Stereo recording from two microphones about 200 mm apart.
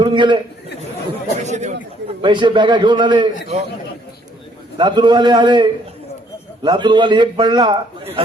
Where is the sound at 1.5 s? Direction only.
35° right (ahead or behind).